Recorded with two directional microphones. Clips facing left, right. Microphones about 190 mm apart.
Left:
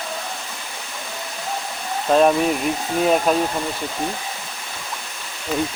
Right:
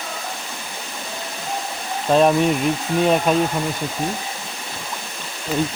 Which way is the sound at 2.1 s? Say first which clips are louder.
Even; centre (ahead or behind).